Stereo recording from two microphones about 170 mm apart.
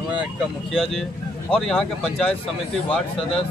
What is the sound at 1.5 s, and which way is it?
Speech, 5° left (ahead or behind).